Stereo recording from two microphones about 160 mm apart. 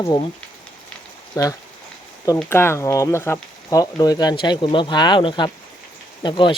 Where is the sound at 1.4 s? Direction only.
20° left (ahead or behind).